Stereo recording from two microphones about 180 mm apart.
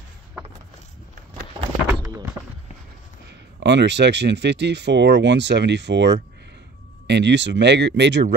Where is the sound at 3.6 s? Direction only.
75° right (ahead or behind).